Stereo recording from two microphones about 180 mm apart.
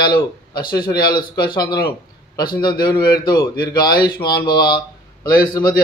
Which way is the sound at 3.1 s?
20° left (ahead or behind).